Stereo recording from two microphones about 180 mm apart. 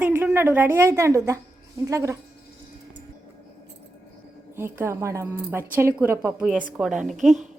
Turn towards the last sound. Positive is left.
turn(degrees=0)  # may be behind; listen again after turning